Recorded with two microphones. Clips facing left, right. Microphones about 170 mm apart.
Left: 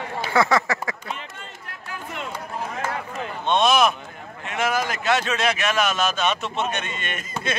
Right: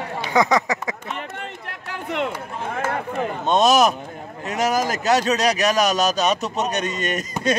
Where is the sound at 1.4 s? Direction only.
70° right (ahead or behind).